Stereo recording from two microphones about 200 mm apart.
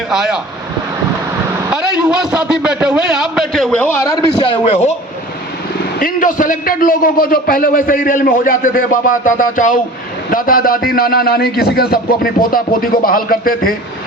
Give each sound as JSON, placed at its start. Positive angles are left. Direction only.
{"t": 0.1, "sound": "a man's voice", "side_deg": 0}
{"t": 1.7, "sound": "a man's voice", "side_deg": -5}
{"t": 4.4, "sound": "speech", "side_deg": 30}
{"t": 6.0, "sound": "a man's voice", "side_deg": 45}